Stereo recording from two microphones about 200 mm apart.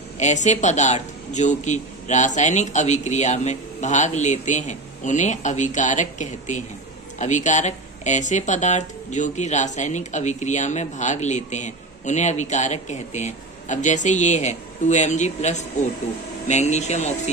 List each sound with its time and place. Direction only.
0.2 s speech: 35° left (ahead or behind)